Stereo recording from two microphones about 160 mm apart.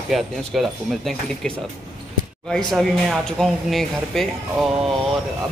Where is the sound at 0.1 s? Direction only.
Centre (ahead or behind).